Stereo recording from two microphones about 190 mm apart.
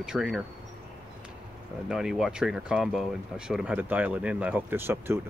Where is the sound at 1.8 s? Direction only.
Centre (ahead or behind).